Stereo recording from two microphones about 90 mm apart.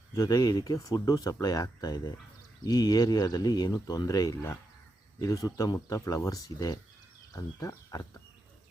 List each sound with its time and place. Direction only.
0.1 s speech: 35° left (ahead or behind)